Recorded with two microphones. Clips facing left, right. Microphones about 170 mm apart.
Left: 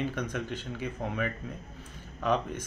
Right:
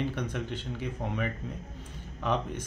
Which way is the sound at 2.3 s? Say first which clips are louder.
Left 2 dB; 45° left (ahead or behind).